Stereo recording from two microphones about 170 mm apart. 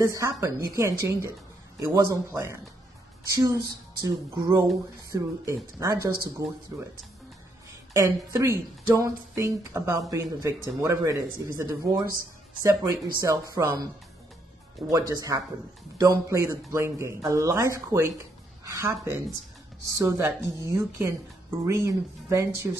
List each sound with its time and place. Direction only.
0.0 s speech: 20° right (ahead or behind)
7.9 s speech: 20° right (ahead or behind)
14.9 s a woman's voice: 20° right (ahead or behind)